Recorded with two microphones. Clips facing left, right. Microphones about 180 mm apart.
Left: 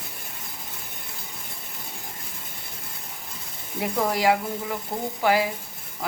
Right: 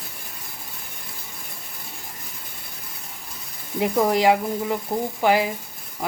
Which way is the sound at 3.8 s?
20° right (ahead or behind).